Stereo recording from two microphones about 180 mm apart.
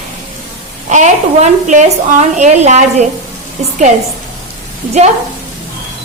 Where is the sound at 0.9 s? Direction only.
40° right (ahead or behind).